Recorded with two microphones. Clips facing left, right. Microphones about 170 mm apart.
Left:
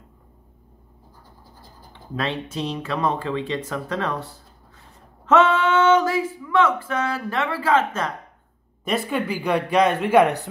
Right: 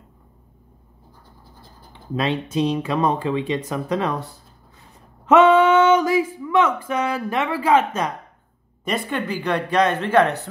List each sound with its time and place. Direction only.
2.5 s speech: 15° right (ahead or behind)
5.2 s a sound: 15° right (ahead or behind)
8.8 s speech: 5° left (ahead or behind)